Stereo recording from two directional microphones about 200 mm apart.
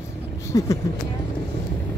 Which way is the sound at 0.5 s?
15° left (ahead or behind).